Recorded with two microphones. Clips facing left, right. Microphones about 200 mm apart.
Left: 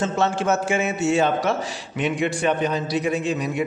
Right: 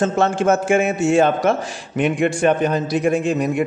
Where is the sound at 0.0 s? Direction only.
50° right (ahead or behind).